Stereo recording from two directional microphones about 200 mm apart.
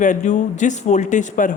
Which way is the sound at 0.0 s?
40° left (ahead or behind).